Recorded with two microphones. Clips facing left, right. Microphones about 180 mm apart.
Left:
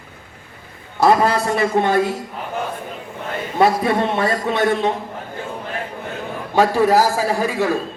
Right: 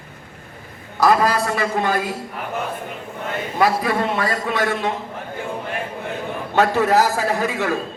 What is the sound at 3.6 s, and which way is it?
A man's voice, 25° left (ahead or behind).